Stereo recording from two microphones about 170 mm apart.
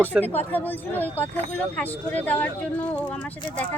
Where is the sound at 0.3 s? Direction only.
10° left (ahead or behind).